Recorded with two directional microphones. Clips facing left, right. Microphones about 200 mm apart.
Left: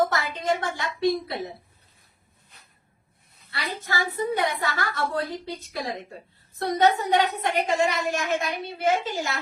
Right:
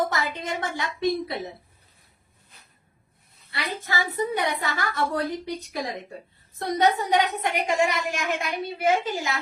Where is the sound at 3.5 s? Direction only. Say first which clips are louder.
Right 1 dB; 20° right (ahead or behind).